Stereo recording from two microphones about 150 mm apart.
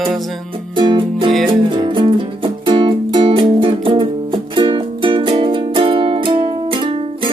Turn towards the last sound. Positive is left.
turn(degrees=-35)  # may be behind; listen again after turning